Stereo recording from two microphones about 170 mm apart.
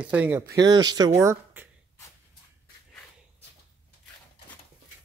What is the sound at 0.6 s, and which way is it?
Speech, 25° right (ahead or behind).